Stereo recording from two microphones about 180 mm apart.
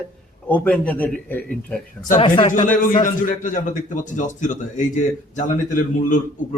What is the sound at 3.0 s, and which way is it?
Speech, 45° left (ahead or behind).